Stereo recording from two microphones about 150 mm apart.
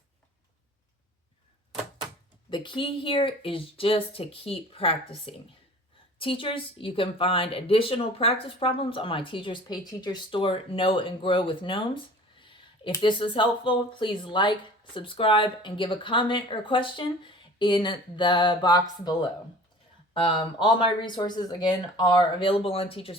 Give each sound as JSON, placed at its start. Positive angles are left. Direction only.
{"t": 2.5, "sound": "a woman's voice", "side_deg": 35}
{"t": 12.4, "sound": "clicking", "side_deg": 35}
{"t": 13.0, "sound": "a woman's voice", "side_deg": 35}